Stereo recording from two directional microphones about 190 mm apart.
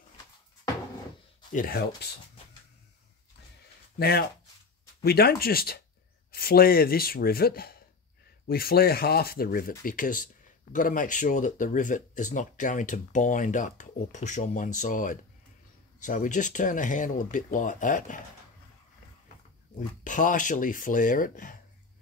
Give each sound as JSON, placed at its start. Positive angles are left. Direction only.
{"t": 1.5, "sound": "speech", "side_deg": 45}
{"t": 4.0, "sound": "speech", "side_deg": 55}
{"t": 20.0, "sound": "speech", "side_deg": 45}